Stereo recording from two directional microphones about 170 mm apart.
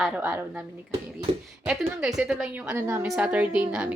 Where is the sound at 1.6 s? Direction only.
5° right (ahead or behind).